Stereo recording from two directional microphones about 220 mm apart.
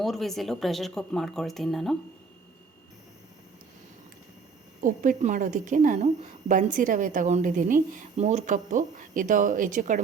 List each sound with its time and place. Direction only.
0.0 s speech: centre (ahead or behind)
4.8 s a woman's voice: 35° right (ahead or behind)